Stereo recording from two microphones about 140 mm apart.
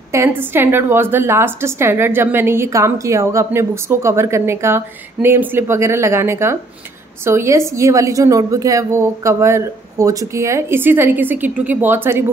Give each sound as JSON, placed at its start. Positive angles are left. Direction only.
{"t": 0.1, "sound": "a woman's voice", "side_deg": -15}